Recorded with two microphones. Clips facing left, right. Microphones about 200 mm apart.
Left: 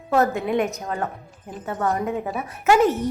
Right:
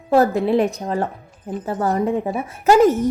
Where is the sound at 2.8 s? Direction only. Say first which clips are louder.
Right 5 dB; 45° right (ahead or behind).